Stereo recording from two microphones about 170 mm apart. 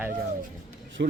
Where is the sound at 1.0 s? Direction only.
75° right (ahead or behind).